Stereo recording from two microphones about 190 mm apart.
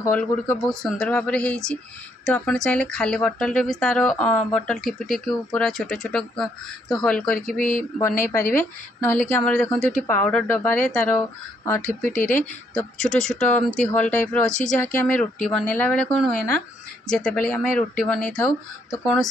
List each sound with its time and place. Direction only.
0.0 s speech: 10° left (ahead or behind)
7.5 s speech: 45° left (ahead or behind)
8.2 s speech: 10° left (ahead or behind)
14.4 s speech: 40° left (ahead or behind)
14.7 s speech: 10° left (ahead or behind)